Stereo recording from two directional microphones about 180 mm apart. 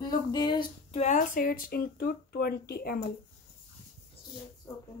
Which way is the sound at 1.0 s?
50° left (ahead or behind).